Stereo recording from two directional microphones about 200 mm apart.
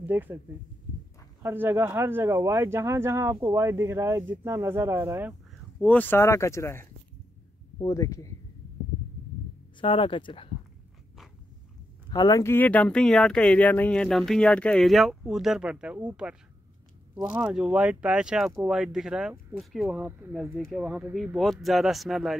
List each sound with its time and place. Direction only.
0.0 s speech: 10° right (ahead or behind)
1.4 s speech: 10° right (ahead or behind)
5.8 s speech: 10° left (ahead or behind)
9.8 s speech: 25° left (ahead or behind)
12.1 s speech: 20° left (ahead or behind); by 22.3 s centre (ahead or behind)